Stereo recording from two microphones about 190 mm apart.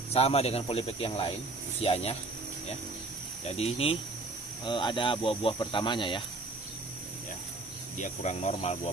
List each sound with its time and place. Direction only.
0.1 s speech: 30° left (ahead or behind)
3.4 s speech: 30° left (ahead or behind)
8.0 s speech: 35° left (ahead or behind)